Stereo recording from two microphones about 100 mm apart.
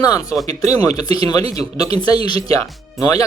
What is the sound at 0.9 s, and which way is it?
Speech, 70° right (ahead or behind).